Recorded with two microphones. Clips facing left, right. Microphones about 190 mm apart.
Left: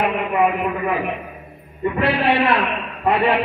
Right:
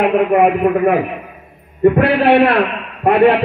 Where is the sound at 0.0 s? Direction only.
65° right (ahead or behind).